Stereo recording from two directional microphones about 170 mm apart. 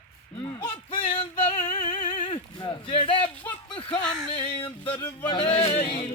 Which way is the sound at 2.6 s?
30° left (ahead or behind).